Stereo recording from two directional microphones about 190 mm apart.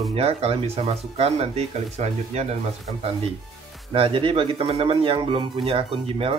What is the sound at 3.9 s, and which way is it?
Speech, 30° right (ahead or behind).